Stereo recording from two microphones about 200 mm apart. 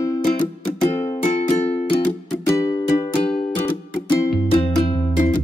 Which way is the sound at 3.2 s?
5° left (ahead or behind).